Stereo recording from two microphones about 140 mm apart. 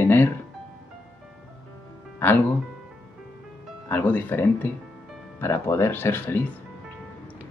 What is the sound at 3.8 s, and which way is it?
Speech, 15° left (ahead or behind).